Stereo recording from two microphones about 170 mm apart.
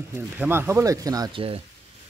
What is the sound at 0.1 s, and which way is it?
Speech, 15° right (ahead or behind).